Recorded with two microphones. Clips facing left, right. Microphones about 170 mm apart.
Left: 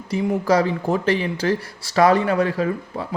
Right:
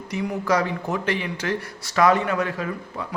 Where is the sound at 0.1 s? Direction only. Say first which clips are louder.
Left 4 dB; 30° left (ahead or behind).